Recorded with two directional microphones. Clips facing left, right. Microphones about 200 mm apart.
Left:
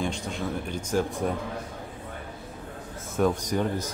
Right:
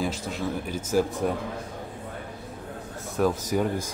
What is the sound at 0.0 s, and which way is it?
Speech, 5° right (ahead or behind).